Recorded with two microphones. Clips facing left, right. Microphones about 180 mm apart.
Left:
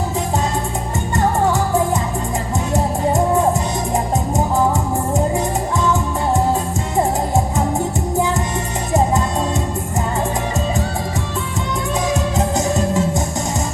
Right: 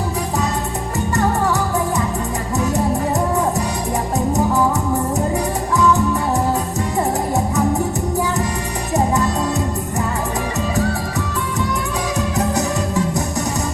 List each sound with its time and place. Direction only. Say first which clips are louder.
12.4 s music: even; 25° left (ahead or behind)